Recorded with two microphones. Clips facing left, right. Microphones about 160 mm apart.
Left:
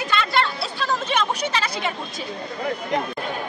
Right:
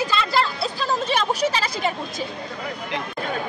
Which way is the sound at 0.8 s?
35° right (ahead or behind).